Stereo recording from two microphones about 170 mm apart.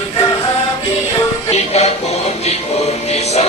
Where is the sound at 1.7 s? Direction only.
40° left (ahead or behind).